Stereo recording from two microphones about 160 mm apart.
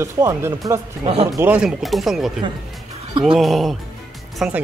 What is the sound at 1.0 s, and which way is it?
Speech, 40° right (ahead or behind).